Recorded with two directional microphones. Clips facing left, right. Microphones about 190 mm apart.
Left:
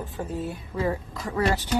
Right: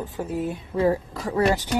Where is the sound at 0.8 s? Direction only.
30° right (ahead or behind).